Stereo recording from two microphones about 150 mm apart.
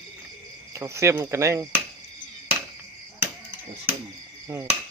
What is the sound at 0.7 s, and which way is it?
Speech, 20° right (ahead or behind).